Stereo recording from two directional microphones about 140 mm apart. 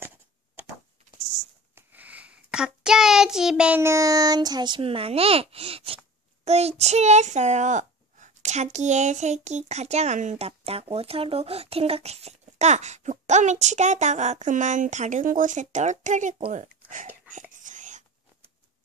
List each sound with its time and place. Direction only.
1.8 s child singing: 10° right (ahead or behind)
3.8 s speech: 20° right (ahead or behind); by 5.9 s 45° right (ahead or behind)
6.4 s child singing: 50° right (ahead or behind)
6.8 s a woman's voice: 55° right (ahead or behind)
17.3 s whispering: 65° right (ahead or behind)